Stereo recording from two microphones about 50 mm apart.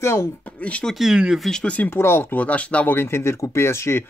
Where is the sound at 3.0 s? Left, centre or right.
Left.